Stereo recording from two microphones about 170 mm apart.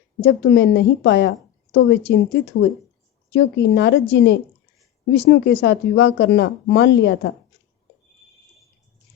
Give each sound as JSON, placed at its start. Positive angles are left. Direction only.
{"t": 0.2, "sound": "speech", "side_deg": 85}
{"t": 5.1, "sound": "speech", "side_deg": 70}